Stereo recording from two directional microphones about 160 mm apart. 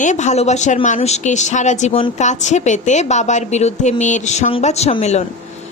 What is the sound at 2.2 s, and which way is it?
A woman's voice, 50° left (ahead or behind).